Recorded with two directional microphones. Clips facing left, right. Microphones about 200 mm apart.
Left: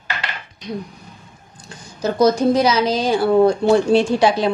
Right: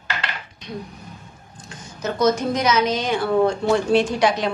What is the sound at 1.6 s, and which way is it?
A woman's voice, 35° left (ahead or behind).